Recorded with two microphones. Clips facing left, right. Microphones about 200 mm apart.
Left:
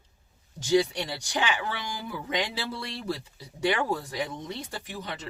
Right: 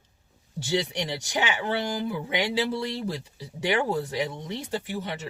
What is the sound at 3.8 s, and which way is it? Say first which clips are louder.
Speech: right 3 dB; 15° right (ahead or behind).